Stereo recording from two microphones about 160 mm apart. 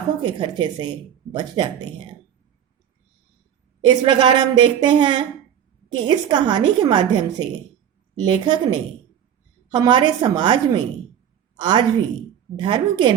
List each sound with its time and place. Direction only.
0.2 s speech: 30° right (ahead or behind)
3.8 s a woman's voice: 30° right (ahead or behind)